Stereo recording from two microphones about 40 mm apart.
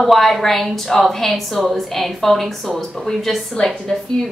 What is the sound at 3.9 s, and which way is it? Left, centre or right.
Speech, centre.